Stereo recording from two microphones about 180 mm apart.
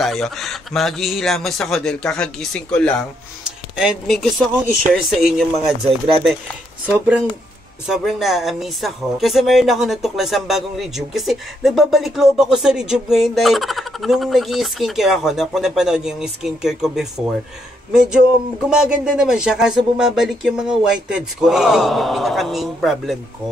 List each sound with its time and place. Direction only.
0.0 s speech: centre (ahead or behind)
6.9 s speech: 10° right (ahead or behind)
18.7 s speech: 5° right (ahead or behind)